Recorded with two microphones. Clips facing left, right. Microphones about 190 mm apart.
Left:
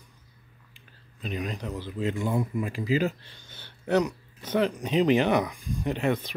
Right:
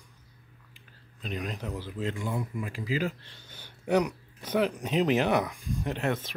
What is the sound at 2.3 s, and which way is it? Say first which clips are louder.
Speech: left 5 dB; 25° left (ahead or behind).